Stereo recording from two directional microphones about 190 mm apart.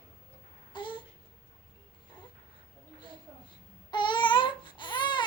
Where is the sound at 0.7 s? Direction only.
25° left (ahead or behind).